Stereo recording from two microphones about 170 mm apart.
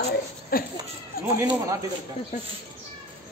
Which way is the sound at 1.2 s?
60° left (ahead or behind).